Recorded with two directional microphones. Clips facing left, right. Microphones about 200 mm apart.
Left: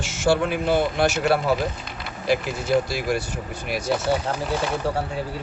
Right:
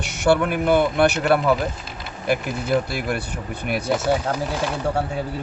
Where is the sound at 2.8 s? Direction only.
55° right (ahead or behind).